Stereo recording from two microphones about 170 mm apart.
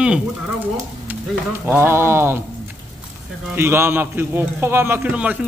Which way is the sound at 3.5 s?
15° right (ahead or behind).